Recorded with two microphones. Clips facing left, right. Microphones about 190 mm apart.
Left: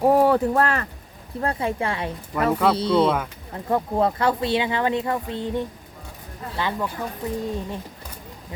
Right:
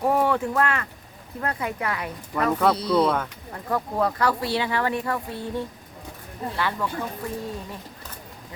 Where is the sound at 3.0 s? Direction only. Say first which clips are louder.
Left 2 dB; 5° left (ahead or behind).